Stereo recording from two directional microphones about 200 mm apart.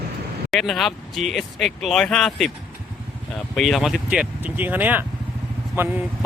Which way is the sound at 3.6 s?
Centre (ahead or behind).